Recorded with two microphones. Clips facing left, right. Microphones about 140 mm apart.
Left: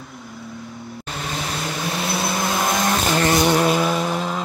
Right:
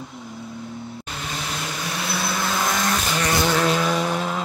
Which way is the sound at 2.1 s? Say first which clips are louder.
Left 1 dB; 20° left (ahead or behind).